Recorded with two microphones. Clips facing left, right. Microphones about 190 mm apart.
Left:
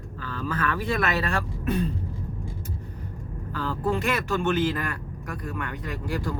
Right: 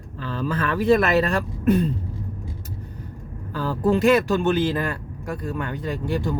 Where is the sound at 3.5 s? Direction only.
35° right (ahead or behind).